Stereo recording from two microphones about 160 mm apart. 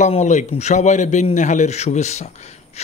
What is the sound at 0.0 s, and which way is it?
A man's voice, 50° left (ahead or behind).